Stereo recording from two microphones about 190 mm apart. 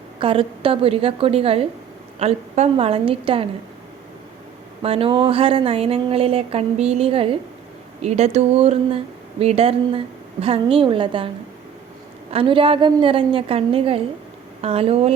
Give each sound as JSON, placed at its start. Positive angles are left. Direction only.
{"t": 0.2, "sound": "speech", "side_deg": -30}
{"t": 4.8, "sound": "speech", "side_deg": -30}
{"t": 12.3, "sound": "speech", "side_deg": -30}